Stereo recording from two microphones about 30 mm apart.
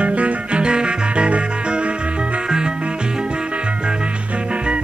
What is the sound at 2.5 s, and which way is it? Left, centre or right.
Music, right.